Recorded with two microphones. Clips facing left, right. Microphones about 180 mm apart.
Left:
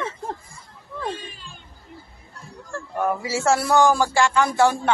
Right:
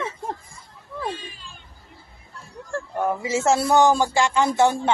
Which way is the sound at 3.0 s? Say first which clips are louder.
Even; 20° right (ahead or behind).